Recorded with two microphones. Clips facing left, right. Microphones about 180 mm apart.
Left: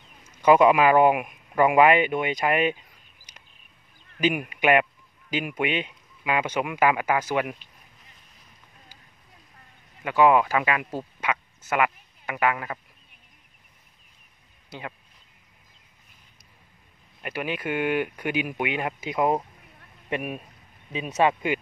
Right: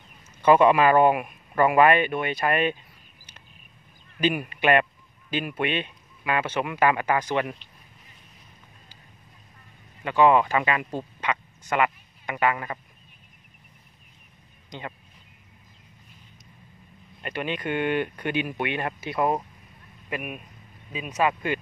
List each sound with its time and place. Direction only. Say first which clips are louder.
0.4 s speech: even; 10° left (ahead or behind)
4.2 s speech: even; 10° left (ahead or behind)
10.0 s speech: even; 10° left (ahead or behind)
14.7 s speech: even; 5° left (ahead or behind)
17.2 s speech: even; 5° left (ahead or behind)
20.1 s speech: left 3 dB; 30° left (ahead or behind)